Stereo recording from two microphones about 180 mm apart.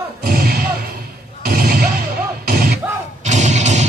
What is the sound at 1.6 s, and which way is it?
Music, 55° right (ahead or behind).